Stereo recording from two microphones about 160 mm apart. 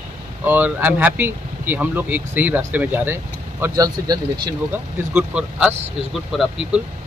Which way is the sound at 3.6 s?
25° right (ahead or behind).